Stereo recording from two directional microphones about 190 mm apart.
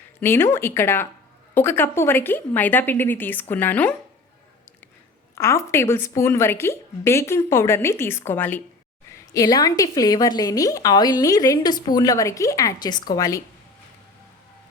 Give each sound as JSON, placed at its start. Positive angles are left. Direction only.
{"t": 0.2, "sound": "speech", "side_deg": 10}
{"t": 5.3, "sound": "a woman's voice", "side_deg": 15}